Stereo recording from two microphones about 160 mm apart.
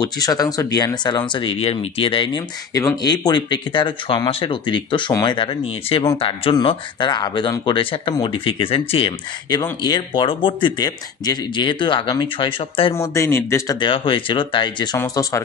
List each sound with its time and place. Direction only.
0.0 s speech: 25° left (ahead or behind)
12.9 s speech: 20° left (ahead or behind)
13.7 s speech: 30° left (ahead or behind)